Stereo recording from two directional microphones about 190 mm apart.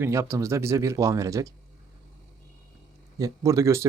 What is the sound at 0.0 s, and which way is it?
Speech, 15° right (ahead or behind).